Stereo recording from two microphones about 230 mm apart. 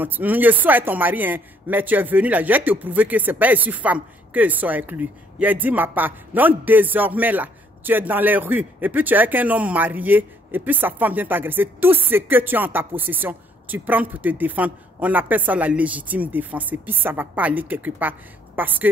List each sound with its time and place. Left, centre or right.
0.0 s a man's voice: centre